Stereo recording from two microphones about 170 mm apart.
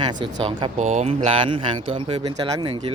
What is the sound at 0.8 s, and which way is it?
Speech, 40° right (ahead or behind).